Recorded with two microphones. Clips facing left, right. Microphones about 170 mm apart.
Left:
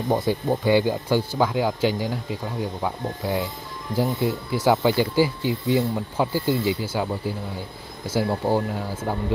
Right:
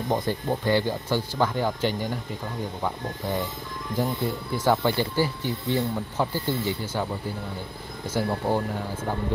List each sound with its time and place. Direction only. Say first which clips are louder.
0.1 s speech: left 4 dB; 10° left (ahead or behind)
8.1 s speech: left 3 dB; 10° left (ahead or behind)